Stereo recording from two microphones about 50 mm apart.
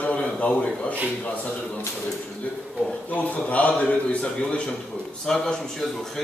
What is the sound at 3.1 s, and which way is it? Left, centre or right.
A man's voice, left.